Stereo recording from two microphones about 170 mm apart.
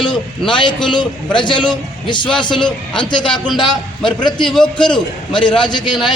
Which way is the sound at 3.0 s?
25° left (ahead or behind).